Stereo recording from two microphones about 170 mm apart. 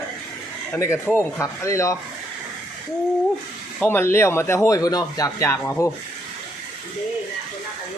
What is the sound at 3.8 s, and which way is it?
Speech, 10° left (ahead or behind).